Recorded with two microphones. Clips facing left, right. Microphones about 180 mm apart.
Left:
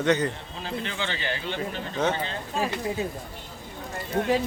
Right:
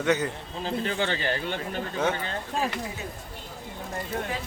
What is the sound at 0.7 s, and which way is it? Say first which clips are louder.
Speech: right 4 dB; 40° right (ahead or behind).